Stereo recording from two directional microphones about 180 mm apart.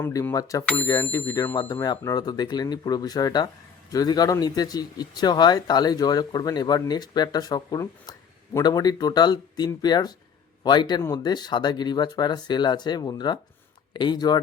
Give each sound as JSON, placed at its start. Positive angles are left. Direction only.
{"t": 0.0, "sound": "a man's voice", "side_deg": 15}